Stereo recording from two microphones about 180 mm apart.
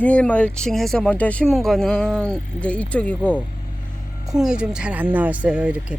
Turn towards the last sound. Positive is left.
turn(degrees=-5)  # may be behind; listen again after turning